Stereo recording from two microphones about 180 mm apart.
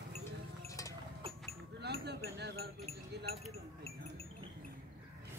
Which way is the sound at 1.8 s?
70° right (ahead or behind).